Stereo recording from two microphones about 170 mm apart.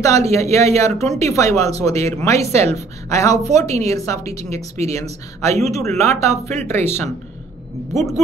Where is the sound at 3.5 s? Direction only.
20° left (ahead or behind).